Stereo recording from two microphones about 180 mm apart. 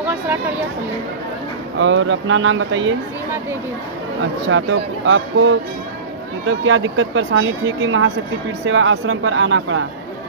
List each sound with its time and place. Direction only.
1.8 s speech: 90° right
4.5 s speech: 90° right